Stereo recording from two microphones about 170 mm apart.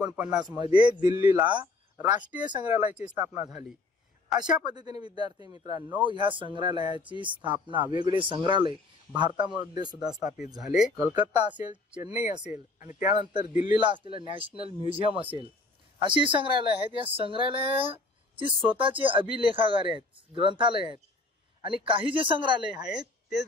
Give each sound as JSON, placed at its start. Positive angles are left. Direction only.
{"t": 0.0, "sound": "speech", "side_deg": -5}
{"t": 0.7, "sound": "speech", "side_deg": -25}
{"t": 2.3, "sound": "a man's voice", "side_deg": -10}
{"t": 4.6, "sound": "speech", "side_deg": -25}
{"t": 10.6, "sound": "speech", "side_deg": -5}
{"t": 11.5, "sound": "speech", "side_deg": -25}
{"t": 12.0, "sound": "speech", "side_deg": -10}
{"t": 13.2, "sound": "speech", "side_deg": -25}
{"t": 13.5, "sound": "speech", "side_deg": -10}
{"t": 13.7, "sound": "speech", "side_deg": -30}
{"t": 22.8, "sound": "speech", "side_deg": -5}